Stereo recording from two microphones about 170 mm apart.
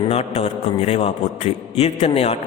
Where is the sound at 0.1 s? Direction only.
40° left (ahead or behind).